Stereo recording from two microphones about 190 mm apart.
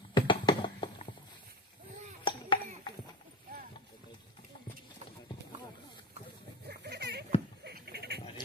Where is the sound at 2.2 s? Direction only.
25° left (ahead or behind).